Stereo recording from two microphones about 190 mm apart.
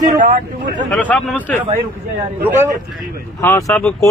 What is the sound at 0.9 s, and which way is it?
Speech, 5° left (ahead or behind).